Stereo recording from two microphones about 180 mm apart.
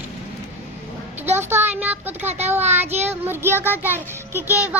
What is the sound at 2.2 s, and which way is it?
Speech, 40° right (ahead or behind).